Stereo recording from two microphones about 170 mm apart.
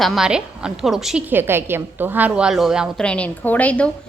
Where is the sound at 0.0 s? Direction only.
Centre (ahead or behind).